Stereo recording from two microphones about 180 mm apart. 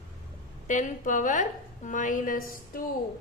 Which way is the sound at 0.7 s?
45° left (ahead or behind).